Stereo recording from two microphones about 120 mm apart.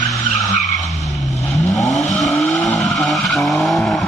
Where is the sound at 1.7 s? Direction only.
Centre (ahead or behind).